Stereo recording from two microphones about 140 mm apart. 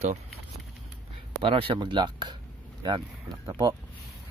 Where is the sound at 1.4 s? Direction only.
40° right (ahead or behind).